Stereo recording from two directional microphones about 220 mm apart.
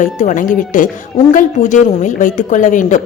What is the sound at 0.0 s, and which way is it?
A woman's voice, 35° left (ahead or behind).